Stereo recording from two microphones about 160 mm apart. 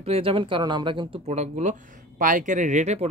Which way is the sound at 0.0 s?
35° right (ahead or behind).